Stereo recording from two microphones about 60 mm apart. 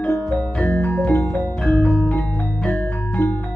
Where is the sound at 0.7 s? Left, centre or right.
Left.